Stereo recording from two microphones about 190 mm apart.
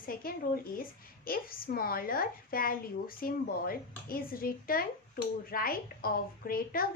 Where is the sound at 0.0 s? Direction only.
50° left (ahead or behind).